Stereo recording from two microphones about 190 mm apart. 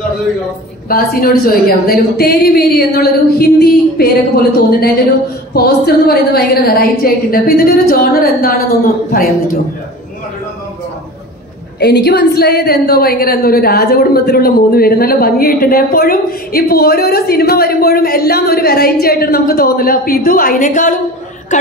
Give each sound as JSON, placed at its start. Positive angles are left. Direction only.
{"t": 0.8, "sound": "a woman's voice", "side_deg": 50}
{"t": 11.8, "sound": "a woman's voice", "side_deg": 60}